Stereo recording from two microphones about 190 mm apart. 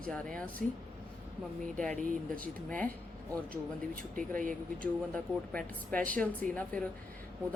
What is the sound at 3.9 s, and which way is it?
Speech, 45° right (ahead or behind).